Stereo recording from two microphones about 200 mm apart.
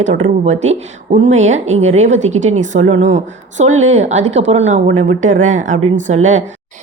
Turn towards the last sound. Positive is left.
turn(degrees=-35)  # may be behind; listen again after turning